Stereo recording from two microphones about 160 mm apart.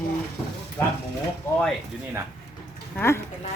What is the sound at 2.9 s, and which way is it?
Speech, 15° left (ahead or behind).